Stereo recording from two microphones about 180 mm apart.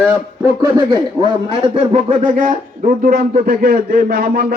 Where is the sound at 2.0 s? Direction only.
45° right (ahead or behind).